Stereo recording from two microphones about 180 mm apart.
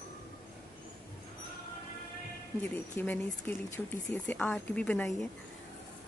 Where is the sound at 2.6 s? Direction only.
10° left (ahead or behind).